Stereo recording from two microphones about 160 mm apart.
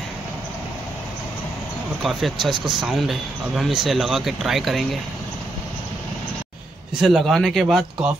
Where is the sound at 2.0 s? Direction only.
Centre (ahead or behind).